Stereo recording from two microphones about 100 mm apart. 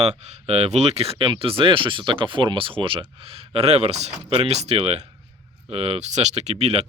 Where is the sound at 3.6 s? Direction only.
90° right.